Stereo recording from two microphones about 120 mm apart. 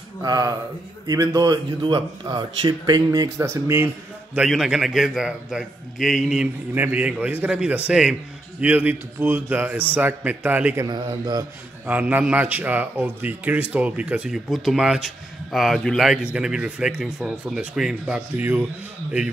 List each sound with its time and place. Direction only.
0.2 s a man's voice: 30° right (ahead or behind)
3.3 s speech: 25° right (ahead or behind)
4.5 s a man's voice: 5° right (ahead or behind)
10.9 s a man's voice: 35° right (ahead or behind)
11.8 s a man's voice: 15° right (ahead or behind)
18.3 s a man's voice: 20° right (ahead or behind)